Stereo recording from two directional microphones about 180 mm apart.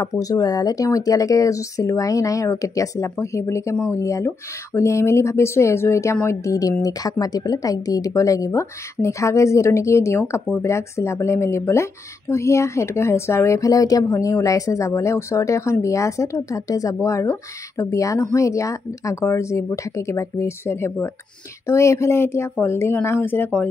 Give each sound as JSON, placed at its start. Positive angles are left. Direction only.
{"t": 0.0, "sound": "speech", "side_deg": 20}